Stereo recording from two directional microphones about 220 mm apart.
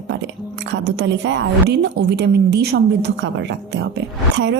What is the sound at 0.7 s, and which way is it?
Speech, 50° right (ahead or behind).